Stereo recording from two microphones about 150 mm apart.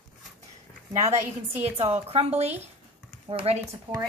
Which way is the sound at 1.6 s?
45° right (ahead or behind).